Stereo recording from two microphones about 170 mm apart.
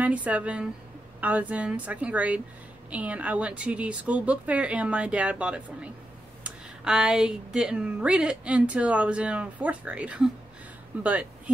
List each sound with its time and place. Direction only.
0.0 s speech: 10° right (ahead or behind)